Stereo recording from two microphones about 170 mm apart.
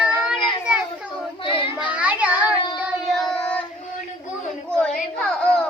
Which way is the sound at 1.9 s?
10° right (ahead or behind).